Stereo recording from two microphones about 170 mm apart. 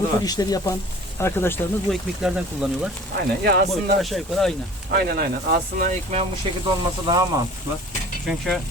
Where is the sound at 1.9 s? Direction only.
5° right (ahead or behind).